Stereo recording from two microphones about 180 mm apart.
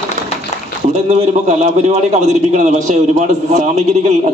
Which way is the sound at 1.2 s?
40° right (ahead or behind).